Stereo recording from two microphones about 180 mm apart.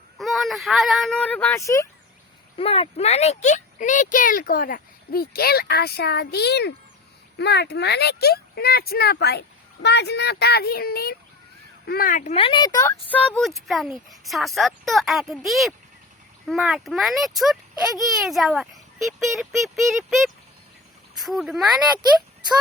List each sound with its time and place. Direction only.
0.2 s speech: centre (ahead or behind); by 1.9 s 15° left (ahead or behind)
2.6 s speech: 30° left (ahead or behind)
13.1 s a child's voice: 5° left (ahead or behind)